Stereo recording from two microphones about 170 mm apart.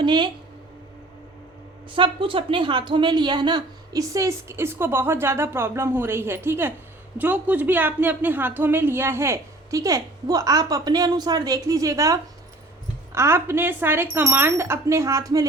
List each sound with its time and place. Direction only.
0.0 s speech: 25° right (ahead or behind)
1.9 s a woman's voice: 30° right (ahead or behind)